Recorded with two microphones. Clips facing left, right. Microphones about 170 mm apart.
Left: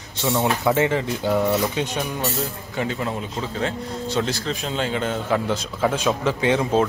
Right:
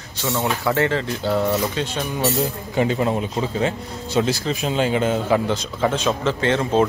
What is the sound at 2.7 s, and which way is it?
Speech, 20° right (ahead or behind).